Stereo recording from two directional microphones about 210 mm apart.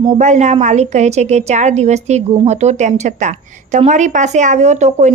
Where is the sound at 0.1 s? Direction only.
35° right (ahead or behind).